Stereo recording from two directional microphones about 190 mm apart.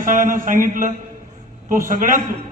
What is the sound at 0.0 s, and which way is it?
A man's voice, 45° right (ahead or behind).